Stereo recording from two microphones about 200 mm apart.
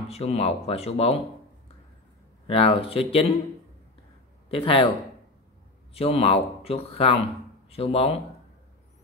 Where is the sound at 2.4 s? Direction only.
30° left (ahead or behind).